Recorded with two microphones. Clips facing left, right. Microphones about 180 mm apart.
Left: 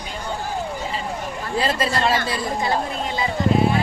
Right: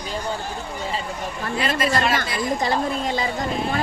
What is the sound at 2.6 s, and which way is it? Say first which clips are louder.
Speech: right 1 dB; 40° right (ahead or behind).